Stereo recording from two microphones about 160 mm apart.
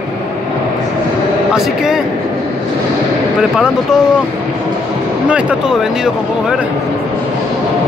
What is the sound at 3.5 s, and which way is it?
Speech, 5° right (ahead or behind).